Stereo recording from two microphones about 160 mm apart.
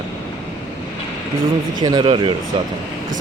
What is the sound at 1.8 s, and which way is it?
Mantra, 25° right (ahead or behind).